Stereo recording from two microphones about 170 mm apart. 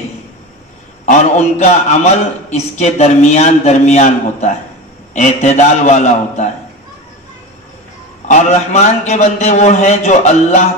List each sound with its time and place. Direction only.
1.0 s a man's voice: 45° left (ahead or behind)
8.3 s a man's voice: 40° left (ahead or behind)